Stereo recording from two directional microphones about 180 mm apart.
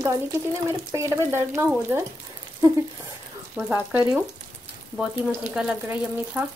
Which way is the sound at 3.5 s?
10° right (ahead or behind).